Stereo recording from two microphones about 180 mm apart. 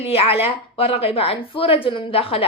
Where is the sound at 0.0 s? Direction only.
35° left (ahead or behind).